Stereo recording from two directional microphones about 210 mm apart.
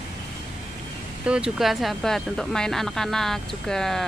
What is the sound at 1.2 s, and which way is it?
Speech, 5° right (ahead or behind).